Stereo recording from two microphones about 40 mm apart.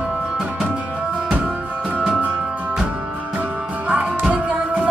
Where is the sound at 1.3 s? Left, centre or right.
Right.